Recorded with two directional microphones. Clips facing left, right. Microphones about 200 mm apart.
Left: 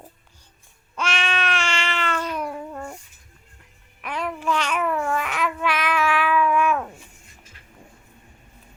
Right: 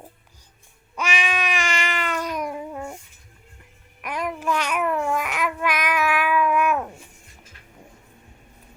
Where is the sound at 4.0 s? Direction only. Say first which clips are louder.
Even; 10° right (ahead or behind).